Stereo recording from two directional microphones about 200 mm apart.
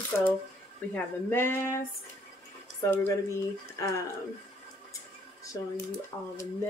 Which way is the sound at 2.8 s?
15° left (ahead or behind).